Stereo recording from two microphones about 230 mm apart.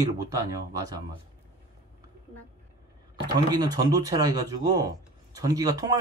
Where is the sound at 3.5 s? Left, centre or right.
Centre.